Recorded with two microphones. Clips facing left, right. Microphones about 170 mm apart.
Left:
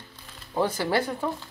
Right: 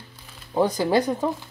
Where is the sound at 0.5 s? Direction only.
15° right (ahead or behind).